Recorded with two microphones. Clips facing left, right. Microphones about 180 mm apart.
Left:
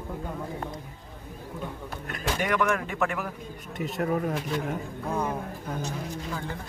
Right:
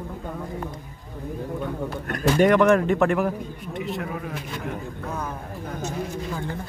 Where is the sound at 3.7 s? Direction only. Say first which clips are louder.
Even; 45° left (ahead or behind).